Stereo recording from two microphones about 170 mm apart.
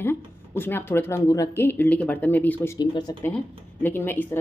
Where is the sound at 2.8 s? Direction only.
25° left (ahead or behind).